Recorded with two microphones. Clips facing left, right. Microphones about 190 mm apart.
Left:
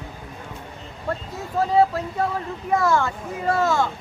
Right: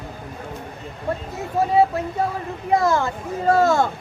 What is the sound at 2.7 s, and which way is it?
Speech, 35° right (ahead or behind).